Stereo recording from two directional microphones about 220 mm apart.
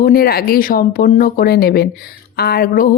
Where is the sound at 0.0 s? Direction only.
45° left (ahead or behind).